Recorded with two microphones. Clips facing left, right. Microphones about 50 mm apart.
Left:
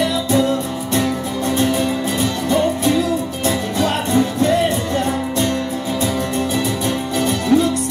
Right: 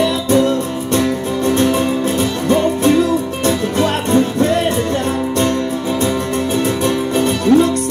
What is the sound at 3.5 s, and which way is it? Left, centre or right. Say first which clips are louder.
Music: right 3 dB; right.